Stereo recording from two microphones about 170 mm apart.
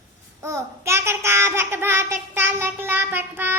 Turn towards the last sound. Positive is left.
turn(degrees=-10)  # may be behind; listen again after turning